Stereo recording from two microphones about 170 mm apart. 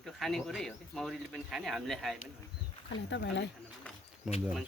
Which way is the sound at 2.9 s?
90° left.